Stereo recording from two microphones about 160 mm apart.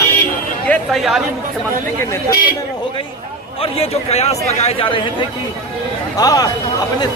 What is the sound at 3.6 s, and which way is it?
Speech, 40° left (ahead or behind).